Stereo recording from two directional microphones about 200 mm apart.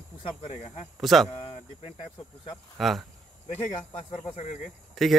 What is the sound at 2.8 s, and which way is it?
Speech, centre (ahead or behind).